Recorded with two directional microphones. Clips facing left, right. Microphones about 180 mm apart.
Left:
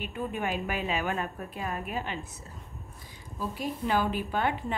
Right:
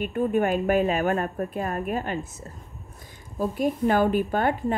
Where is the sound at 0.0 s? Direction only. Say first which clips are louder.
Right 10 dB; 50° right (ahead or behind).